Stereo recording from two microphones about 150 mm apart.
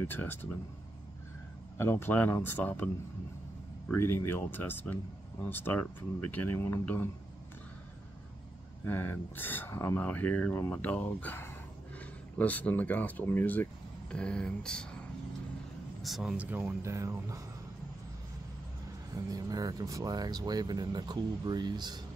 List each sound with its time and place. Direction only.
0.0 s speech: 15° left (ahead or behind)
1.8 s speech: 15° left (ahead or behind)
3.9 s speech: 15° left (ahead or behind)
8.8 s speech: 15° left (ahead or behind); by 17.4 s 20° right (ahead or behind)
19.1 s speech: 25° right (ahead or behind)